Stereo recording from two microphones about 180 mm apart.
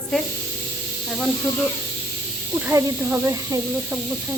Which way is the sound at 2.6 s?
15° right (ahead or behind).